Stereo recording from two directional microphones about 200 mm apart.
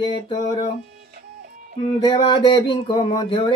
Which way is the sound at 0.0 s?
25° left (ahead or behind).